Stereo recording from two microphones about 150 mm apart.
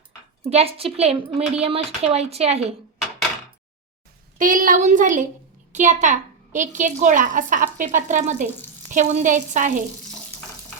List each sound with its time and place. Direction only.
0.5 s a woman's voice: 40° right (ahead or behind)
4.4 s a woman's voice: 65° right (ahead or behind)